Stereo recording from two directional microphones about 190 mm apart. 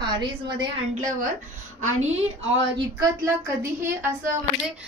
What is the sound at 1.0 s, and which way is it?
Speech, 40° right (ahead or behind).